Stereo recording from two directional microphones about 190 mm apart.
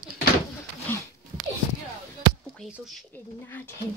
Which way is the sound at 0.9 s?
10° left (ahead or behind).